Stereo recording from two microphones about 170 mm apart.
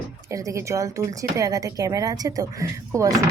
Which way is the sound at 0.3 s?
20° right (ahead or behind).